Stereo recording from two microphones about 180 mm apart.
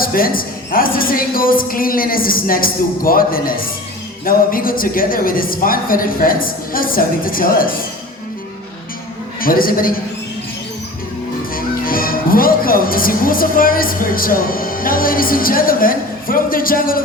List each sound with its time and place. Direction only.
0.0 s a woman's voice: 55° left (ahead or behind)
9.4 s a woman's voice: 50° left (ahead or behind)
11.5 s speech: 55° left (ahead or behind)